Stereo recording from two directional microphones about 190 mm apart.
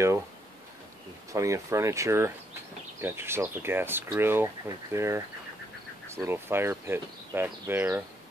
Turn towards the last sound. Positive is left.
turn(degrees=-10)  # may be behind; listen again after turning